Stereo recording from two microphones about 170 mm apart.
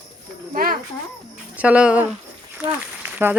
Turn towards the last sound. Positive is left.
turn(degrees=-10)  # may be behind; listen again after turning